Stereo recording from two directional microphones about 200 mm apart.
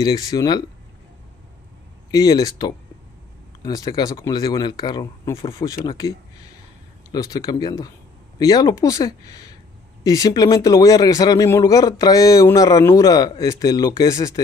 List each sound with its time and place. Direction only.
0.0 s speech: 20° left (ahead or behind)
2.0 s a man's voice: 20° left (ahead or behind)